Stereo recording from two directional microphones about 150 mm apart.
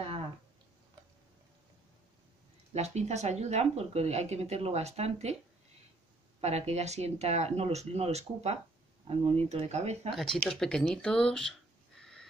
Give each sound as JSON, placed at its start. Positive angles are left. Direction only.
{"t": 2.7, "sound": "speech", "side_deg": -50}
{"t": 6.4, "sound": "speech", "side_deg": -45}
{"t": 10.0, "sound": "speech", "side_deg": 0}
{"t": 12.0, "sound": "a sound", "side_deg": 5}